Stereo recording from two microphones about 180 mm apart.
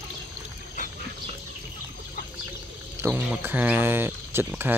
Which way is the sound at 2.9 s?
10° right (ahead or behind).